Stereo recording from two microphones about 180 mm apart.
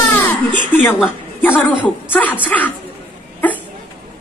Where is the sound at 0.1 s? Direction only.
10° left (ahead or behind).